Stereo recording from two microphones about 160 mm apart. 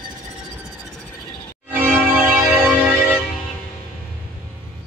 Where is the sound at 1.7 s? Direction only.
10° right (ahead or behind).